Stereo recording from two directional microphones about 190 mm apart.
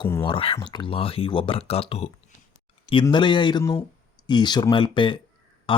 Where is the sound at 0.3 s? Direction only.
30° left (ahead or behind).